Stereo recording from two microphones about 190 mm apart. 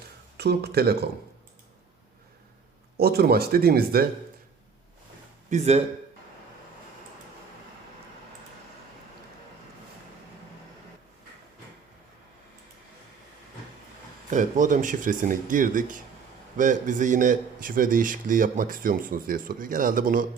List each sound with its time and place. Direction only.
0.3 s speech: 60° right (ahead or behind)
3.0 s a man's voice: 55° right (ahead or behind)
5.5 s speech: 35° right (ahead or behind)
14.3 s a man's voice: 40° right (ahead or behind)